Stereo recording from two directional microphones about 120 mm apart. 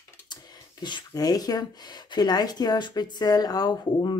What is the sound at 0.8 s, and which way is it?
Speech, 35° left (ahead or behind).